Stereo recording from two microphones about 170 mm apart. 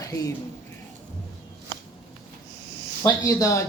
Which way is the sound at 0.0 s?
20° left (ahead or behind).